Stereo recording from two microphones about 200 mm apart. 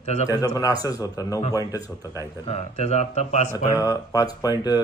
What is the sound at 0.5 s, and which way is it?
Speech, 20° left (ahead or behind).